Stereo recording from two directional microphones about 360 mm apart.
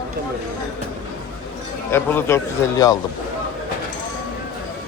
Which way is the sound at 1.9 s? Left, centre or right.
Centre.